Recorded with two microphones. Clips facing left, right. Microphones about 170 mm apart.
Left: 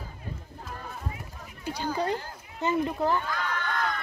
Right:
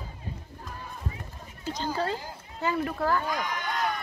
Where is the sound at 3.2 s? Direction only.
15° right (ahead or behind).